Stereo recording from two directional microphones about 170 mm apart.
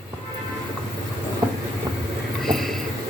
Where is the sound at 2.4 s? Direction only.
Centre (ahead or behind).